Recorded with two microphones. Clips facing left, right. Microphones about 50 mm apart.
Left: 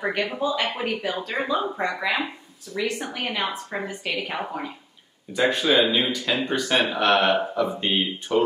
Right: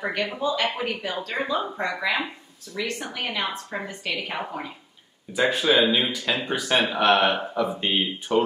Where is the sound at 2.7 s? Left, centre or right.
Left.